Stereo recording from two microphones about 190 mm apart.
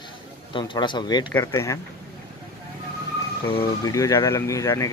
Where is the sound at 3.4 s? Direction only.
25° left (ahead or behind).